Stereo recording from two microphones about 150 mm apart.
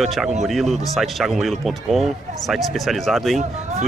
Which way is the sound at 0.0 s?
Centre (ahead or behind).